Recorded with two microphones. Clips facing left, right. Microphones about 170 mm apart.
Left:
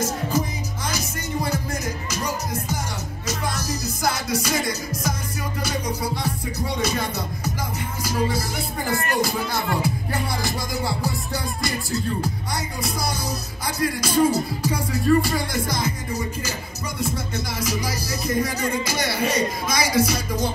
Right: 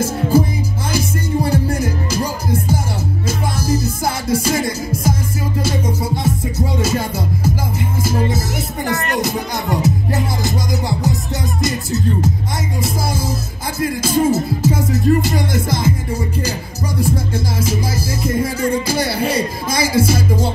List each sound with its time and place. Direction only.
0.9 s music: 30° right (ahead or behind)
8.8 s music: 75° right (ahead or behind)
9.2 s music: 20° right (ahead or behind)
13.7 s music: 25° right (ahead or behind)
17.0 s music: 30° right (ahead or behind)